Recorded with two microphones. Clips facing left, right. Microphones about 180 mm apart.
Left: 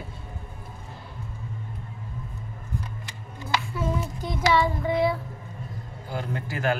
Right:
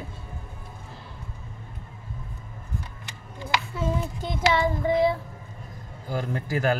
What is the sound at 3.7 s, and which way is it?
Child singing, 25° right (ahead or behind).